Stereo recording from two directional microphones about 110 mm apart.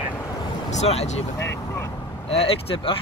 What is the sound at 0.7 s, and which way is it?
Speech, 80° left.